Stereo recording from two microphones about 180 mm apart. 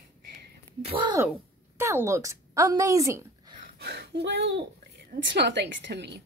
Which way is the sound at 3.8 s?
65° right (ahead or behind).